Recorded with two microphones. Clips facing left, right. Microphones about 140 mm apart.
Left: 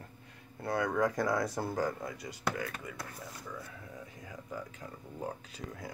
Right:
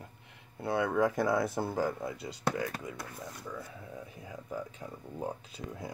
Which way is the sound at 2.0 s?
30° right (ahead or behind).